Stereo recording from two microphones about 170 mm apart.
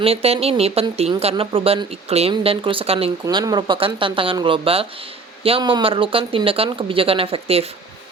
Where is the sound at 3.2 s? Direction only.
20° right (ahead or behind).